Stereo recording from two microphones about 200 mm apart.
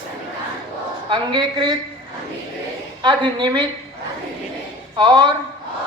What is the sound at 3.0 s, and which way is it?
Speech, 25° right (ahead or behind).